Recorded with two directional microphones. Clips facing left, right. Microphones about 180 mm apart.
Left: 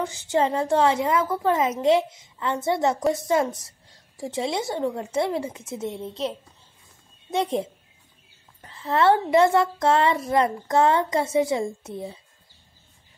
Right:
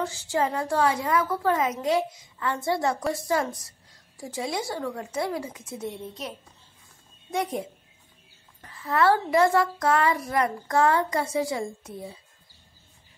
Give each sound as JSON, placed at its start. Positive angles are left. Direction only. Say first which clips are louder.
{"t": 0.0, "sound": "a woman's voice", "louder": "left 3 dB", "side_deg": 20}